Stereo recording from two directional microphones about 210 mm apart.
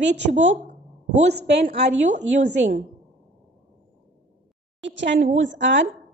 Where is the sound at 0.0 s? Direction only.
55° right (ahead or behind).